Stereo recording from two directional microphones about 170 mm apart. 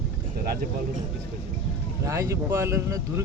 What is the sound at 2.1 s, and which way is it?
Speech, 20° right (ahead or behind).